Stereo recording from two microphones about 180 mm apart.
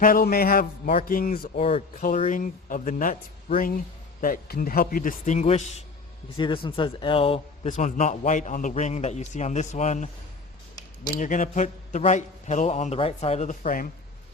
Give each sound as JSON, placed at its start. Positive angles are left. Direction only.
{"t": 0.0, "sound": "a man's voice", "side_deg": 55}
{"t": 1.5, "sound": "a man's voice", "side_deg": 35}
{"t": 2.0, "sound": "a man's voice", "side_deg": 45}
{"t": 4.2, "sound": "a man's voice", "side_deg": 55}
{"t": 6.3, "sound": "a man's voice", "side_deg": 25}